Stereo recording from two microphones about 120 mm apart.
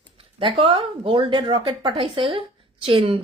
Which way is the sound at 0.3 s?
50° right (ahead or behind).